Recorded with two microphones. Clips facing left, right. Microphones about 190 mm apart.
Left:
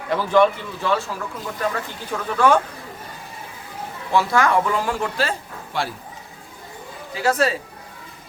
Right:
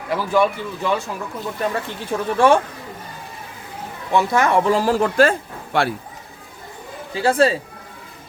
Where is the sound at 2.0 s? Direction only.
25° right (ahead or behind).